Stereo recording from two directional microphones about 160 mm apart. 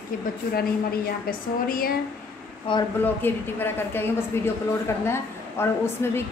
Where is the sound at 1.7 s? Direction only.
65° left (ahead or behind).